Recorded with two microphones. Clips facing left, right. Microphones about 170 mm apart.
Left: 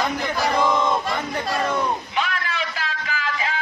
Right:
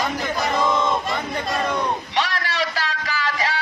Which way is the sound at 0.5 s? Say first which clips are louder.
Even; 10° left (ahead or behind).